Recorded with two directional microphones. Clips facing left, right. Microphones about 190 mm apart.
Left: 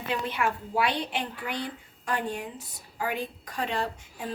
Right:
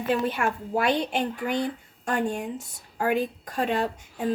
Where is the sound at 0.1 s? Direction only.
45° right (ahead or behind).